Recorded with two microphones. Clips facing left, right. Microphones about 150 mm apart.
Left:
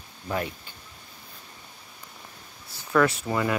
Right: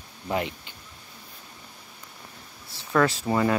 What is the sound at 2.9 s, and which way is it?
Speech, 30° right (ahead or behind).